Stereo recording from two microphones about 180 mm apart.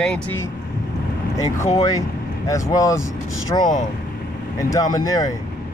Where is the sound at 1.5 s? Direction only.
15° left (ahead or behind).